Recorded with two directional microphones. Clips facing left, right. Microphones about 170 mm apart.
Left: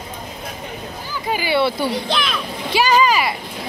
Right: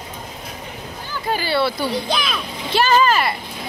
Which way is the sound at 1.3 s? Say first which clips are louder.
Left 2 dB; 15° left (ahead or behind).